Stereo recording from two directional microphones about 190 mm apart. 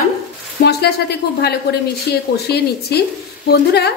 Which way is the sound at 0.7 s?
60° left (ahead or behind).